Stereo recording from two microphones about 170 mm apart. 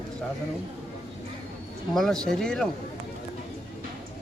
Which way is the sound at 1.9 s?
5° left (ahead or behind).